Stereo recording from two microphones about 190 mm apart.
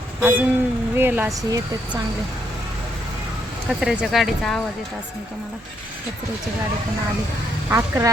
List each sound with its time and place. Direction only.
0.2 s speech: 10° right (ahead or behind)
3.7 s speech: 5° right (ahead or behind)
7.7 s speech: 10° right (ahead or behind)